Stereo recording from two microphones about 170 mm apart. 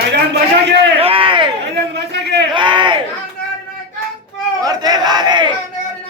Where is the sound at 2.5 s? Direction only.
30° right (ahead or behind).